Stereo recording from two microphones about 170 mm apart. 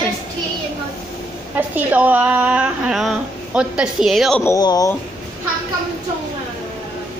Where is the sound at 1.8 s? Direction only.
10° right (ahead or behind).